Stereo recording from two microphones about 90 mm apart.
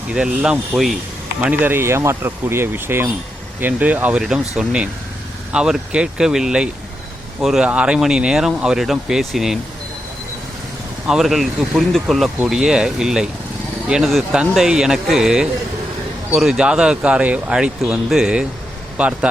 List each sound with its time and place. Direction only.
0.1 s speech: 10° right (ahead or behind)
1.4 s speech: 20° right (ahead or behind)
4.2 s speech: 5° right (ahead or behind)
11.0 s speech: 5° right (ahead or behind)